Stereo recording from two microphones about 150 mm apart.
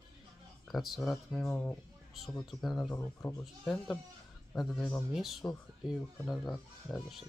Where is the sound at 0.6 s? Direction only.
Centre (ahead or behind).